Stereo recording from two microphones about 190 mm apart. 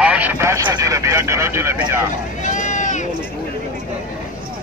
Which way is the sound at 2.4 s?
40° left (ahead or behind).